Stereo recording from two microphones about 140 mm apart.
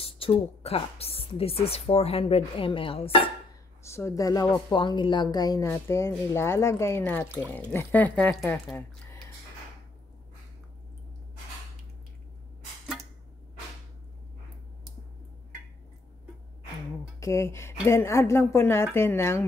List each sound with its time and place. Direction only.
0.0 s a woman's voice: 40° left (ahead or behind)
3.8 s a woman's voice: 20° left (ahead or behind); by 8.7 s 5° left (ahead or behind)
17.2 s a woman's voice: 20° left (ahead or behind)